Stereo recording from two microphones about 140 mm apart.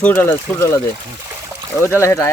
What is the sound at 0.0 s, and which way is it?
Speech, 15° left (ahead or behind).